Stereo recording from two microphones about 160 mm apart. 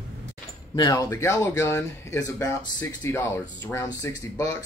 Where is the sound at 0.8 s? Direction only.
20° left (ahead or behind).